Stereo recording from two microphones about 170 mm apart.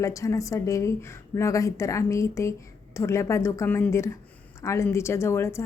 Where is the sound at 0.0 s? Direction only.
20° left (ahead or behind).